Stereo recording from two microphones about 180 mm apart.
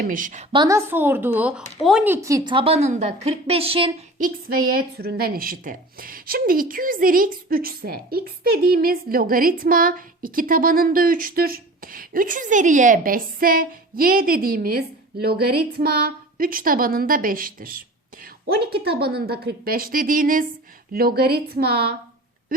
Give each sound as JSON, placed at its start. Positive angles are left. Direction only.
{"t": 0.0, "sound": "a woman's voice", "side_deg": -50}
{"t": 0.5, "sound": "a woman's voice", "side_deg": -25}
{"t": 0.9, "sound": "speech", "side_deg": -10}
{"t": 2.2, "sound": "a woman's voice", "side_deg": -20}
{"t": 4.2, "sound": "a woman's voice", "side_deg": -55}